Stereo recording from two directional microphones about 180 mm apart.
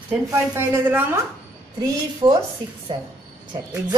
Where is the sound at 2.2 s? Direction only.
20° right (ahead or behind).